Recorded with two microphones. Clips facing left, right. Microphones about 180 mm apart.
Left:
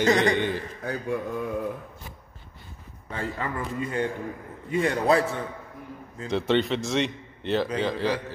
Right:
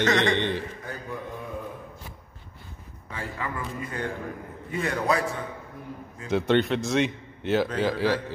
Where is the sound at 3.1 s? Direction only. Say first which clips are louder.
Left 3 dB; 35° left (ahead or behind).